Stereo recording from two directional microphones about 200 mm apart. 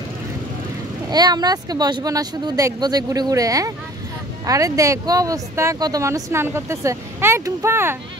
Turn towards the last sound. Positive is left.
turn(degrees=-10)  # may be behind; listen again after turning